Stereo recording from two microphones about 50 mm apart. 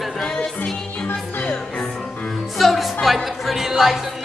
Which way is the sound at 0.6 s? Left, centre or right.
Left.